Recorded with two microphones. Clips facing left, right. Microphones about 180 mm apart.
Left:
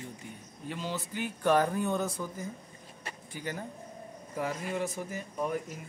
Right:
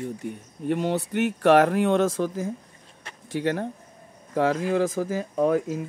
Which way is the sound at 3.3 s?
75° right (ahead or behind).